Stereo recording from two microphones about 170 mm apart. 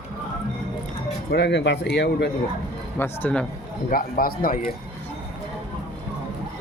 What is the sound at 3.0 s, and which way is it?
Speech, 10° left (ahead or behind).